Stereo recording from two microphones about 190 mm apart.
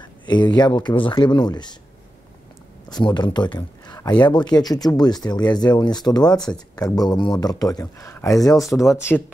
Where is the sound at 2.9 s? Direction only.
20° left (ahead or behind).